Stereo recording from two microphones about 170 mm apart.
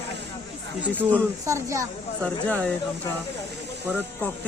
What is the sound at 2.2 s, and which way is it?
Speech, 5° left (ahead or behind).